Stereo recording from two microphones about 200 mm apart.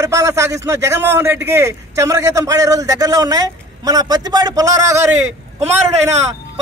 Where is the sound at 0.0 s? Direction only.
15° right (ahead or behind).